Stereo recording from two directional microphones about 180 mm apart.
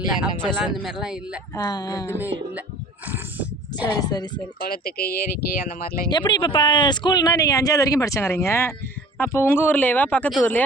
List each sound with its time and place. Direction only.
0.1 s speech: 5° right (ahead or behind)
1.5 s speech: 20° left (ahead or behind)
3.1 s a sound: 10° right (ahead or behind)
4.0 s speech: 20° left (ahead or behind)
4.6 s speech: 55° left (ahead or behind)
6.1 s speech: 25° left (ahead or behind); by 10.6 s 5° left (ahead or behind)